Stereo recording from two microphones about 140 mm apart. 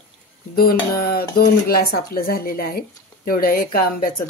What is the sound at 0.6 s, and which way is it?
Speech, 90° left.